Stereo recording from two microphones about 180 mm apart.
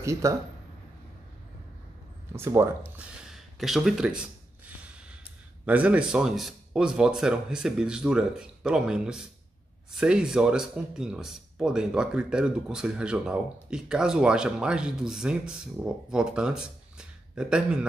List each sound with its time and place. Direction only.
0.0 s speech: 15° right (ahead or behind)
2.3 s speech: 15° right (ahead or behind)
3.0 s a sound: centre (ahead or behind)
5.7 s speech: 10° right (ahead or behind)